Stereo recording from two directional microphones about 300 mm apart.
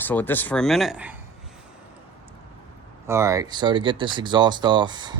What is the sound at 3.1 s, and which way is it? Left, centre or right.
Speech, centre.